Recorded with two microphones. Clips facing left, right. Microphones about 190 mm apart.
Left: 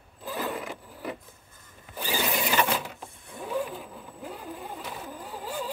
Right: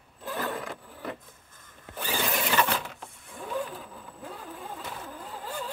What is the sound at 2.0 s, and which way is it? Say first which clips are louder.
Zipper: left 1 dB; 10° left (ahead or behind).